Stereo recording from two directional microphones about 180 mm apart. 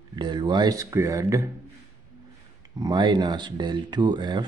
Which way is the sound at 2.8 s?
25° right (ahead or behind).